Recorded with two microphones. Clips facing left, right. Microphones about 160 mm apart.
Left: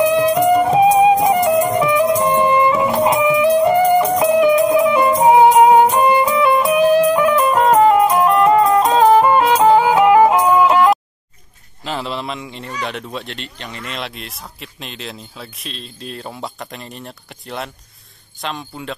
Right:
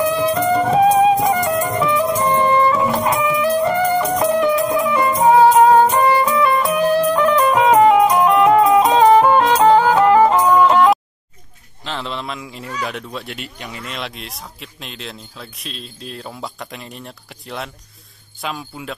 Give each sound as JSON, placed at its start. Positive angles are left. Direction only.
{"t": 0.0, "sound": "music", "side_deg": 15}
{"t": 11.8, "sound": "a sound", "side_deg": 5}
{"t": 12.8, "sound": "speech", "side_deg": 0}